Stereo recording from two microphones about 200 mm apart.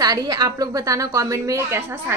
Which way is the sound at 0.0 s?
20° right (ahead or behind).